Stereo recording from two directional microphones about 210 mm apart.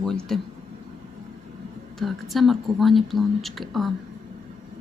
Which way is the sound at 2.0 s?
Centre (ahead or behind).